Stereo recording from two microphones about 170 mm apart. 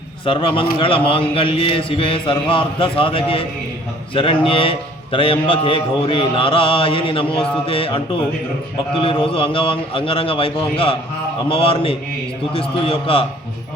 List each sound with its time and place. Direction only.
0.3 s a man's voice: 30° left (ahead or behind)